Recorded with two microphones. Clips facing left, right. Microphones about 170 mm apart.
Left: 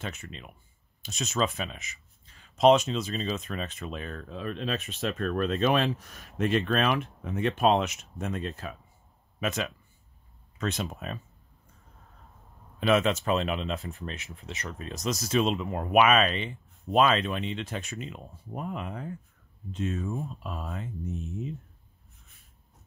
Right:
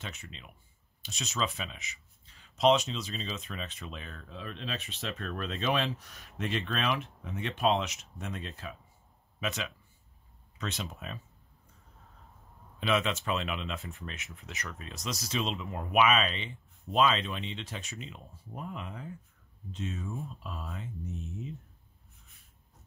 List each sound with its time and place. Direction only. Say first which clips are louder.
0.0 s speech: left 6 dB; 50° left (ahead or behind)
12.8 s speech: left 6 dB; 45° left (ahead or behind); by 14.8 s 25° left (ahead or behind)
14.8 s speech: left 9 dB; 45° left (ahead or behind)